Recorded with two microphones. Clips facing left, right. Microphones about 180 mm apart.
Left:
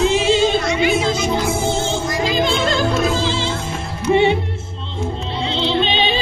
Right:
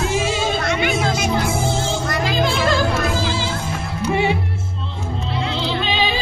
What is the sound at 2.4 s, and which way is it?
Music, 20° left (ahead or behind).